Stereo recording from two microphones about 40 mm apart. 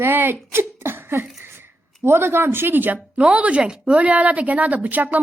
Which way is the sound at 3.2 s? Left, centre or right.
Right.